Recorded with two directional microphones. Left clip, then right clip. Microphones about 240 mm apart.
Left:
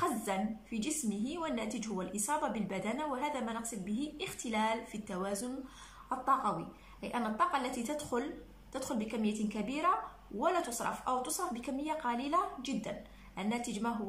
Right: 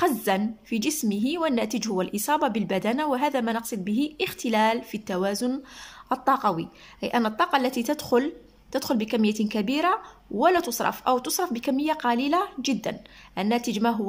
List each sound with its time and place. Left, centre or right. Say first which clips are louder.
0.0 s speech: right 11 dB; right